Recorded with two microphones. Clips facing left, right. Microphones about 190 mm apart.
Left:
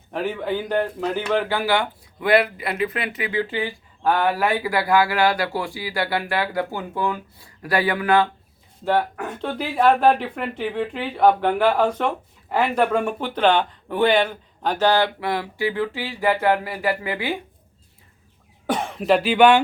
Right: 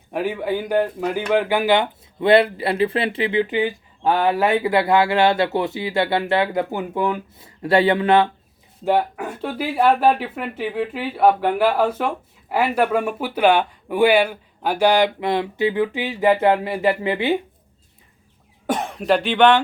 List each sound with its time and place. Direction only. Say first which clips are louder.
0.1 s speech: right 2 dB; 10° right (ahead or behind)
8.8 s speech: right 2 dB; 10° right (ahead or behind)
18.6 s speech: right 1 dB; centre (ahead or behind)